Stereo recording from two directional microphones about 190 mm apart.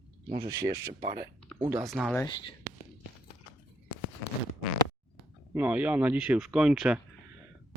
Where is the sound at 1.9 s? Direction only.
Centre (ahead or behind).